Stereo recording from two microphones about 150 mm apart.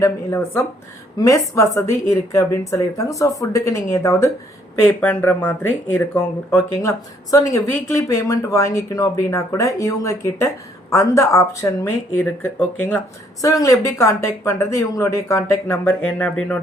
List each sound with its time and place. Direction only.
0.0 s speech: 15° left (ahead or behind)
4.9 s speech: 10° left (ahead or behind)
13.4 s speech: 20° left (ahead or behind)